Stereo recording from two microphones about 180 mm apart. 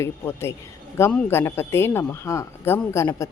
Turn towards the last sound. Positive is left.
turn(degrees=15)  # may be behind; listen again after turning